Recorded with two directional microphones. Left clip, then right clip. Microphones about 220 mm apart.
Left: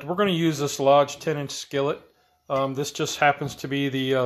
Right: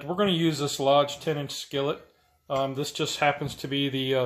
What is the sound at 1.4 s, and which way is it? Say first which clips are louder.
Speech: left 2 dB; 65° left (ahead or behind).